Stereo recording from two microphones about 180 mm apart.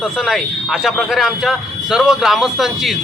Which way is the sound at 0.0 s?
Centre (ahead or behind).